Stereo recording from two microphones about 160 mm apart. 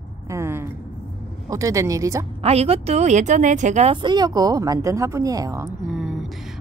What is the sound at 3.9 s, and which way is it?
Speech, 30° right (ahead or behind).